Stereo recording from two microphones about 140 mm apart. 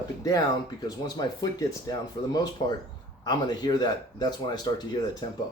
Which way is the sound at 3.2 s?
30° left (ahead or behind).